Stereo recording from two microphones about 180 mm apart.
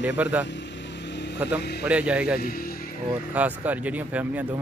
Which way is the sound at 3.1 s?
10° right (ahead or behind).